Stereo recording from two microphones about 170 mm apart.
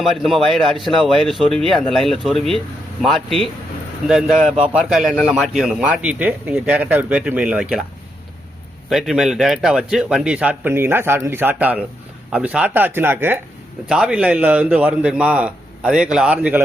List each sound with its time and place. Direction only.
0.0 s a man's voice: centre (ahead or behind)
8.9 s a man's voice: centre (ahead or behind)